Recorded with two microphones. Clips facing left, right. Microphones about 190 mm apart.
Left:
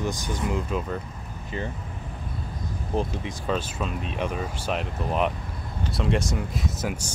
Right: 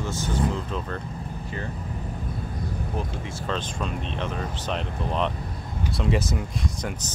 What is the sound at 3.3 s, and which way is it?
Speech, 10° left (ahead or behind).